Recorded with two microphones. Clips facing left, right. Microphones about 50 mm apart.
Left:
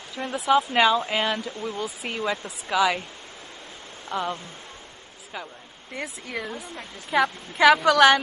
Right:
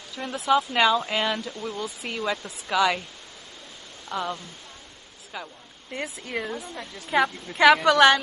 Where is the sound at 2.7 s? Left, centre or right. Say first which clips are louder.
Even; centre.